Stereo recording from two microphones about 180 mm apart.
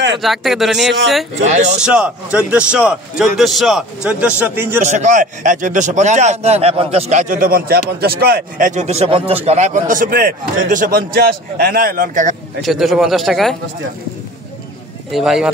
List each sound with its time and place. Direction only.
0.2 s a man's voice: centre (ahead or behind)
4.8 s a man's voice: 40° right (ahead or behind)
12.6 s a man's voice: centre (ahead or behind)
15.0 s a man's voice: centre (ahead or behind)